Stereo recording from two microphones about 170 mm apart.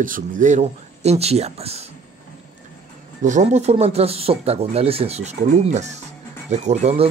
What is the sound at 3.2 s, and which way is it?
Speech, 45° right (ahead or behind).